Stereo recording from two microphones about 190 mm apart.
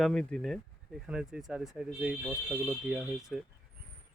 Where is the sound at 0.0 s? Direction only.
5° left (ahead or behind).